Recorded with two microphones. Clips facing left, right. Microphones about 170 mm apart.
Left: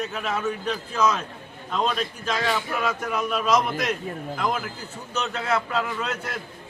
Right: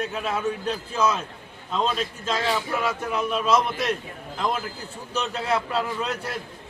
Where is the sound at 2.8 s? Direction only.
25° right (ahead or behind).